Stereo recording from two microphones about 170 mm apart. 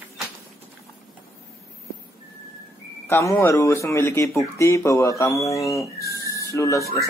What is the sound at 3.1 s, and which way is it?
Speech, 15° left (ahead or behind).